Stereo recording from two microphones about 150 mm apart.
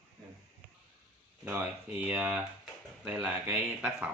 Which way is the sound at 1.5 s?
10° right (ahead or behind).